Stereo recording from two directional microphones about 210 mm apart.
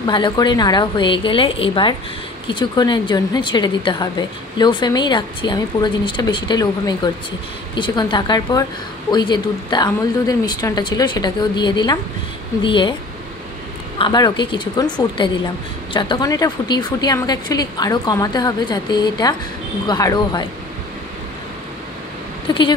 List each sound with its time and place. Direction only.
0.0 s a woman's voice: 20° left (ahead or behind)
13.9 s a woman's voice: 20° left (ahead or behind)
22.5 s a woman's voice: 25° left (ahead or behind)